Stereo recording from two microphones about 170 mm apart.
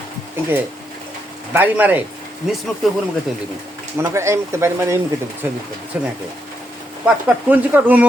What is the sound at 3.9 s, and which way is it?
Speech, 15° right (ahead or behind).